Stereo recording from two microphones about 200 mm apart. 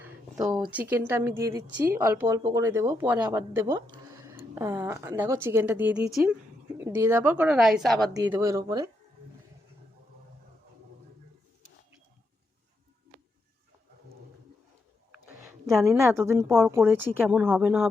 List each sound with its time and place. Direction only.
0.7 s speech: 10° right (ahead or behind)
8.1 s speech: 15° right (ahead or behind)
16.0 s speech: 15° right (ahead or behind)